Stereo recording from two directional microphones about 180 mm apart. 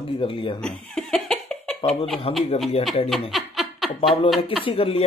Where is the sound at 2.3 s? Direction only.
35° left (ahead or behind).